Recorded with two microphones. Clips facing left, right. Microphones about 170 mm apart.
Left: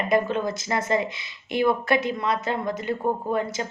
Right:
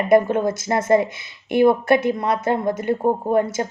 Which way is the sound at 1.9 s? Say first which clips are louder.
Right 5 dB; 55° right (ahead or behind).